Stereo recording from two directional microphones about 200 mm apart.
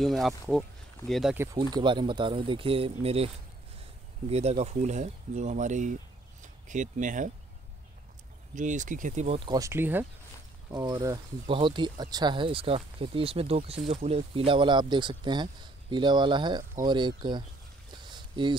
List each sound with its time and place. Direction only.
0.0 s speech: centre (ahead or behind)
1.3 s speech: 15° right (ahead or behind); by 3.3 s 30° right (ahead or behind)
4.3 s speech: 30° right (ahead or behind)
8.5 s speech: 40° right (ahead or behind); by 17.5 s 20° right (ahead or behind)
18.1 s a sound: 25° right (ahead or behind)